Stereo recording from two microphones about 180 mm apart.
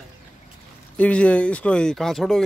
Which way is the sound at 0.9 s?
5° left (ahead or behind).